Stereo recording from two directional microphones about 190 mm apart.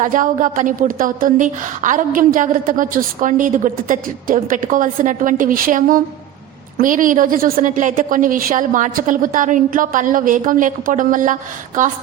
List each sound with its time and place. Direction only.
0.0 s a woman's voice: 45° right (ahead or behind)